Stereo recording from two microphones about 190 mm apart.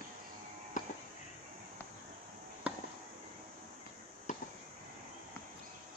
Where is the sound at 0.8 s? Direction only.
40° left (ahead or behind).